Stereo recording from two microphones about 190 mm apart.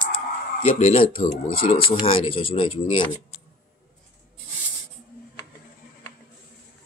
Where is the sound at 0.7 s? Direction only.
35° left (ahead or behind).